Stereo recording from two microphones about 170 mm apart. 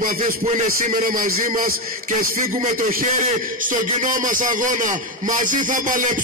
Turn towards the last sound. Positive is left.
turn(degrees=-50)  # may be behind; listen again after turning